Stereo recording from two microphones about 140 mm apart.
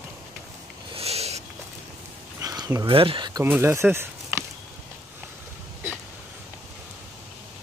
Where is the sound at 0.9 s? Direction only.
45° right (ahead or behind).